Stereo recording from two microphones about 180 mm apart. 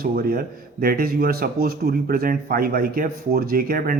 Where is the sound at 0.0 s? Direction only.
55° right (ahead or behind).